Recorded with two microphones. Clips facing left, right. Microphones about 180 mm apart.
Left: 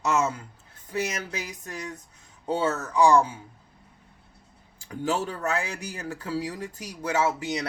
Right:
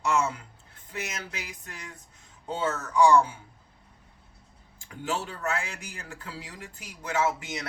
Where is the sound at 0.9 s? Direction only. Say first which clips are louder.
Left 7 dB; 40° left (ahead or behind).